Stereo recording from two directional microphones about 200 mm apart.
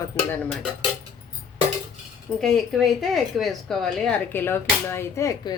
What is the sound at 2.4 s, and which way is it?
A woman's voice, centre (ahead or behind).